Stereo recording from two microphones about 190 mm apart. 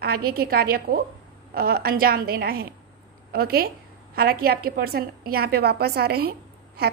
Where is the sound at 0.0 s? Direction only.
55° right (ahead or behind).